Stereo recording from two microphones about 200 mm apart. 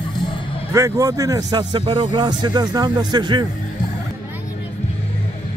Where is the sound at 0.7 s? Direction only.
15° right (ahead or behind).